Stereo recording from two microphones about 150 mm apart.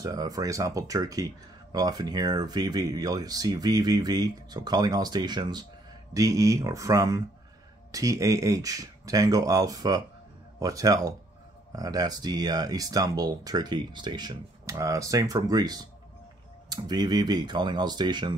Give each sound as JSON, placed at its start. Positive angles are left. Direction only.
{"t": 0.0, "sound": "speech", "side_deg": -25}